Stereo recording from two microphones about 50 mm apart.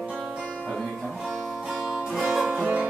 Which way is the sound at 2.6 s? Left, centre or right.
Centre.